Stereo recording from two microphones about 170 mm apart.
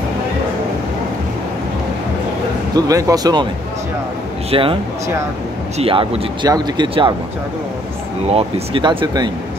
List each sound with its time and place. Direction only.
2.7 s speech: 20° right (ahead or behind)
4.5 s speech: 30° right (ahead or behind)
5.8 s speech: 35° right (ahead or behind)
8.3 s speech: 35° right (ahead or behind)